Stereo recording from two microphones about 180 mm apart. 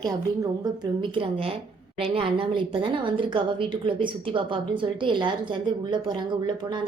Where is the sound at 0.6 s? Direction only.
30° right (ahead or behind).